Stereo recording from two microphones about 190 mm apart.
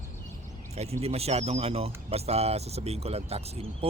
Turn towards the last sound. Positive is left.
turn(degrees=-35)  # may be behind; listen again after turning